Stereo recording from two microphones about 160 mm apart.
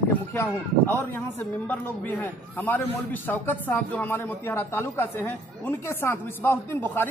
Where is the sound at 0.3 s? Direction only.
15° left (ahead or behind).